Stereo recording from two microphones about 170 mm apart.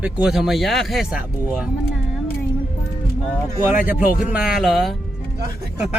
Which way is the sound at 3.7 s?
10° right (ahead or behind).